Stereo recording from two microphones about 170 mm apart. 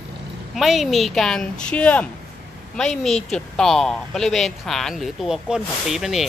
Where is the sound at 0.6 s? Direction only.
Centre (ahead or behind).